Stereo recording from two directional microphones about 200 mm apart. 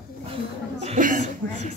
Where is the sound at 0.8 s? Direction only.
40° right (ahead or behind).